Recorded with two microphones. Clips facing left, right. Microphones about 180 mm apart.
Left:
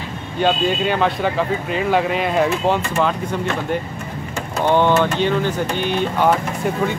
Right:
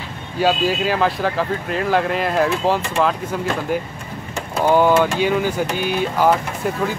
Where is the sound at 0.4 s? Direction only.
5° right (ahead or behind).